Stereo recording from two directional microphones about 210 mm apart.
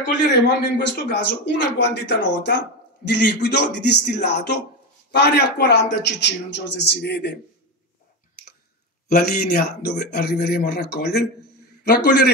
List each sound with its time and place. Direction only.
0.7 s a man's voice: 55° left (ahead or behind)
9.1 s speech: 50° left (ahead or behind)